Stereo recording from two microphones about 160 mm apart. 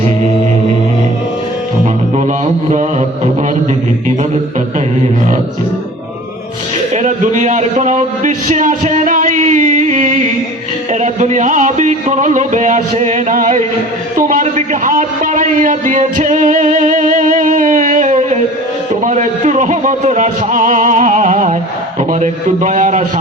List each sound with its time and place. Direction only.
6.9 s a sound: 50° right (ahead or behind)
11.0 s music: 50° right (ahead or behind)
14.2 s a man's voice: 55° right (ahead or behind)